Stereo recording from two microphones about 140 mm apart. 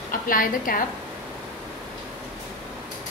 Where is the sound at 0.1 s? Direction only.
80° left.